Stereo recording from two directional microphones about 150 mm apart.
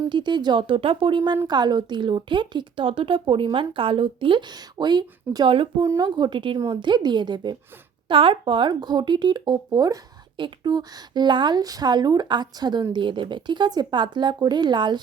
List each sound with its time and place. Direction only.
0.1 s a woman's voice: 30° right (ahead or behind)